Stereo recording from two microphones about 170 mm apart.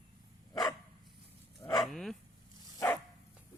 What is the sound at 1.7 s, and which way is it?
Bow-wow, centre (ahead or behind).